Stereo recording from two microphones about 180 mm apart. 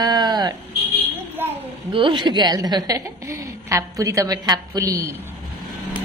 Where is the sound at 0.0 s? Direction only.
20° right (ahead or behind).